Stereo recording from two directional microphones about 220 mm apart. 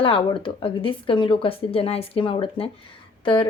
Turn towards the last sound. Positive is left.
turn(degrees=20)  # may be behind; listen again after turning